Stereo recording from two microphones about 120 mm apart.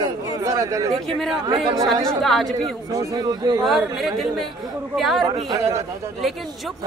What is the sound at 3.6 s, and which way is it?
A man's voice, centre (ahead or behind).